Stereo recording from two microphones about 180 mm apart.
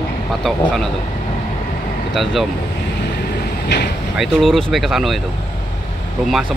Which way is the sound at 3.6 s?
65° left (ahead or behind).